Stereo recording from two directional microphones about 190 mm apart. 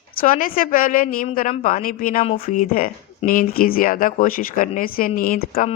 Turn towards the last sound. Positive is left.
turn(degrees=50)  # may be behind; listen again after turning